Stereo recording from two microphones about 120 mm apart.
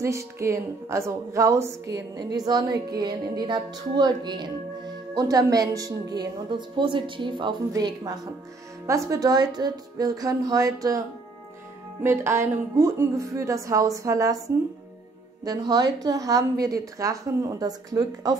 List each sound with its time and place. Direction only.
0.0 s music: 25° right (ahead or behind)
8.8 s a woman's voice: 25° right (ahead or behind)
12.0 s a woman's voice: 20° right (ahead or behind)
15.4 s music: 30° right (ahead or behind)